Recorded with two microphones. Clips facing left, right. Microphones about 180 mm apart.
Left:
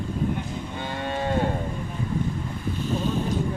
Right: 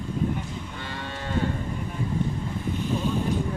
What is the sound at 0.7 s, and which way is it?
Moo, 55° left (ahead or behind).